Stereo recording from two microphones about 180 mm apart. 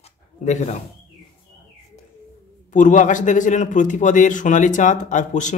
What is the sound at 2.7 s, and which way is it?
Speech, 45° left (ahead or behind).